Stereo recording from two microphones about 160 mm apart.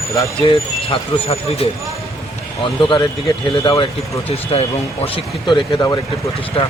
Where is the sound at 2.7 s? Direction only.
30° left (ahead or behind).